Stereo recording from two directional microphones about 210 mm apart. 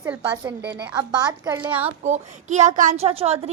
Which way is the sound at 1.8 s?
35° right (ahead or behind).